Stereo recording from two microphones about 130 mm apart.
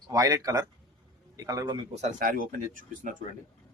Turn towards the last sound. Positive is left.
turn(degrees=-90)